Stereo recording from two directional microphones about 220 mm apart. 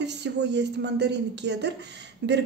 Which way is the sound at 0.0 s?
50° right (ahead or behind).